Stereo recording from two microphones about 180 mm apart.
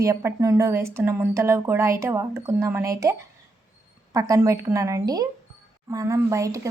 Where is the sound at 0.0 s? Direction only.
15° right (ahead or behind).